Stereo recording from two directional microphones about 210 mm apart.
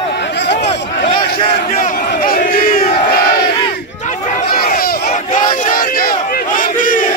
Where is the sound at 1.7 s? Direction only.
40° left (ahead or behind).